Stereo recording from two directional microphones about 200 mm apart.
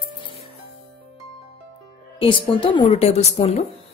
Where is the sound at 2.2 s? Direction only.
25° left (ahead or behind).